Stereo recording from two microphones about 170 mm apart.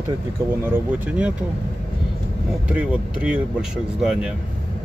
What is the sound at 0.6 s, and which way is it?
Speech, 10° right (ahead or behind).